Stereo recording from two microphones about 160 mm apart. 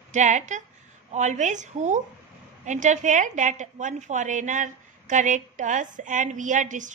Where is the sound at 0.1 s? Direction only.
50° right (ahead or behind).